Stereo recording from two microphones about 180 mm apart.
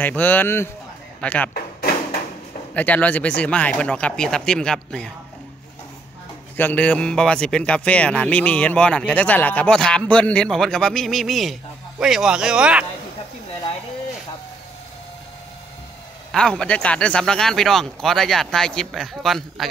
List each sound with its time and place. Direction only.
0.0 s a man's voice: 10° left (ahead or behind)
2.7 s a man's voice: 10° left (ahead or behind)
6.5 s a man's voice: 10° left (ahead or behind); by 12.8 s 5° right (ahead or behind)
16.3 s a man's voice: 5° left (ahead or behind)